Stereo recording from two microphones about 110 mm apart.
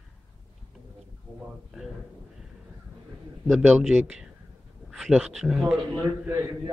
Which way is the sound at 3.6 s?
15° right (ahead or behind).